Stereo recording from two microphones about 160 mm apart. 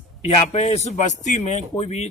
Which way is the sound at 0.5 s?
40° left (ahead or behind).